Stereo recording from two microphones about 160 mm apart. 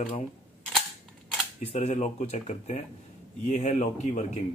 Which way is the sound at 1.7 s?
45° left (ahead or behind).